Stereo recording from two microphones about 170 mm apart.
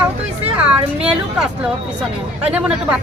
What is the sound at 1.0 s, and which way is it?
A man's voice, 5° right (ahead or behind).